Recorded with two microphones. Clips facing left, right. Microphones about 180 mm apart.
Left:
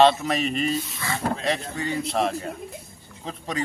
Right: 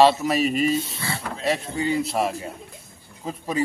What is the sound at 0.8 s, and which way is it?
Speech, 30° right (ahead or behind).